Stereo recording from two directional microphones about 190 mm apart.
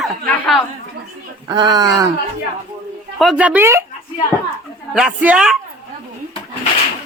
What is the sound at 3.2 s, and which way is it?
Speech, 5° right (ahead or behind).